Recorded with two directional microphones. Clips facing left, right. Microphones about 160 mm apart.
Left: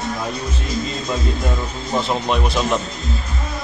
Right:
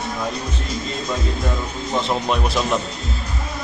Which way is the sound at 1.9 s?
Centre (ahead or behind).